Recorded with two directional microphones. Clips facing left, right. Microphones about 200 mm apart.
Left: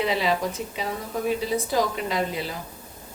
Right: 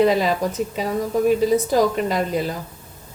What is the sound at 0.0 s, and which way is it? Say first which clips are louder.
Speech: right 7 dB; 45° right (ahead or behind).